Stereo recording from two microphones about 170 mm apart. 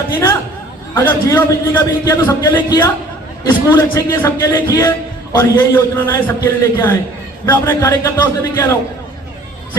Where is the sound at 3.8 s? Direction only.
15° left (ahead or behind).